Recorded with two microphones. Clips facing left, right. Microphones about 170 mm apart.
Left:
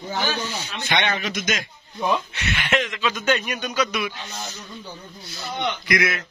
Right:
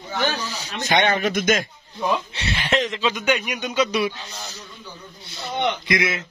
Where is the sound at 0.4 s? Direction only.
35° right (ahead or behind).